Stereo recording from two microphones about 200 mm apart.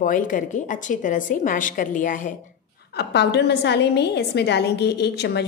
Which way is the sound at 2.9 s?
55° left (ahead or behind).